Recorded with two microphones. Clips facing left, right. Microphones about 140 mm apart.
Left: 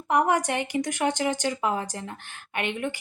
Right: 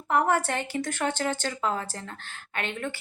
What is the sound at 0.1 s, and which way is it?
Speech, 15° left (ahead or behind).